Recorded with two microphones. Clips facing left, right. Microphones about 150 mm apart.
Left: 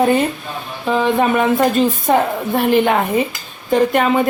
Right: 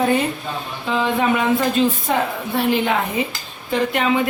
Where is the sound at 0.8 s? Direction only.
55° left (ahead or behind).